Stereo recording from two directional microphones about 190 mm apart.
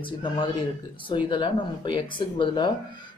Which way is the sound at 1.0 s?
25° left (ahead or behind).